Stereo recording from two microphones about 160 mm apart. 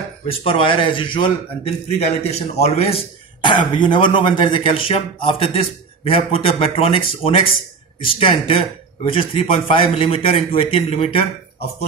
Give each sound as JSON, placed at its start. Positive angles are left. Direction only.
{"t": 0.3, "sound": "speech", "side_deg": 35}